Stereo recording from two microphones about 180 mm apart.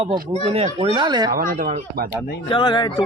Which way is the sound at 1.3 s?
50° right (ahead or behind).